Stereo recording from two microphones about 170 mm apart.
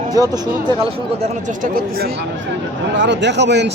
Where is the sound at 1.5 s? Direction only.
55° right (ahead or behind).